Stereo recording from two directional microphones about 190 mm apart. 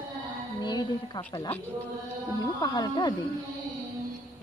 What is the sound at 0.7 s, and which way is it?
A woman's voice, 20° left (ahead or behind).